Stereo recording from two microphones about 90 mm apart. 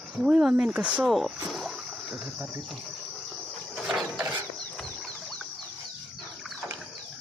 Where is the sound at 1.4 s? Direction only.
5° right (ahead or behind).